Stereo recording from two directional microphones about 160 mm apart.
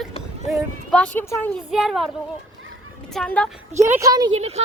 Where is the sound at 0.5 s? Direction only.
5° left (ahead or behind).